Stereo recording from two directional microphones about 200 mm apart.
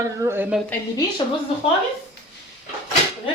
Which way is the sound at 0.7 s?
20° left (ahead or behind).